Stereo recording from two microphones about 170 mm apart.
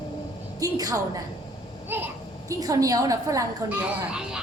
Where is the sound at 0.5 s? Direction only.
20° right (ahead or behind); by 4.4 s 5° right (ahead or behind).